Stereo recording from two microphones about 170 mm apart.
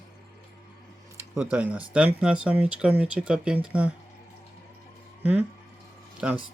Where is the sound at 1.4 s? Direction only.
10° right (ahead or behind).